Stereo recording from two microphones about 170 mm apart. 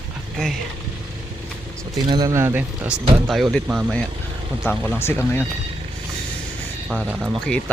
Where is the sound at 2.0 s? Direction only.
25° right (ahead or behind).